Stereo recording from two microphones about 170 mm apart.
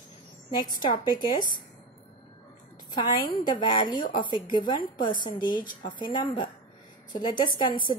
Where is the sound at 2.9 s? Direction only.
25° left (ahead or behind).